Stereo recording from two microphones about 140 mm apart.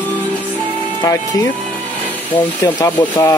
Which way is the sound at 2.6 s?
25° left (ahead or behind).